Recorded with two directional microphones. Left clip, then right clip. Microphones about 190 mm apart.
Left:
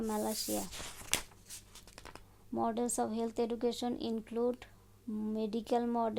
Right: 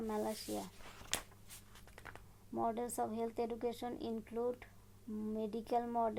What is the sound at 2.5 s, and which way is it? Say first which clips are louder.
Speech: left 4 dB; 45° left (ahead or behind).